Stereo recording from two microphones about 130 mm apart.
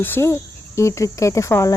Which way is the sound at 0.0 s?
20° left (ahead or behind).